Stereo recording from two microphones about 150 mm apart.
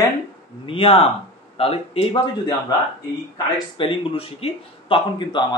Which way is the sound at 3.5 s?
35° left (ahead or behind).